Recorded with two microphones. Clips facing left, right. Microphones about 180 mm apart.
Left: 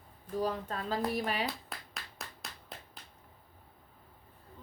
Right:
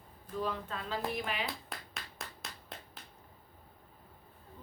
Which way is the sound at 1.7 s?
Centre (ahead or behind).